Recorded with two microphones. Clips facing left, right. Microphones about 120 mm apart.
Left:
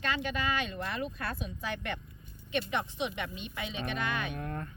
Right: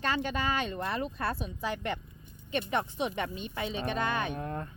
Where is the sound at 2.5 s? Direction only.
40° right (ahead or behind); by 4.6 s 25° right (ahead or behind).